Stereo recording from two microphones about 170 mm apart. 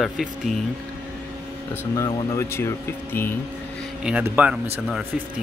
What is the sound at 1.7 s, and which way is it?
Speech, 15° left (ahead or behind).